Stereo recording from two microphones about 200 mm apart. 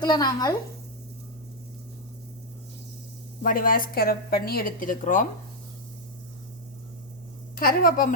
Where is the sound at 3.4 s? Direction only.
45° left (ahead or behind).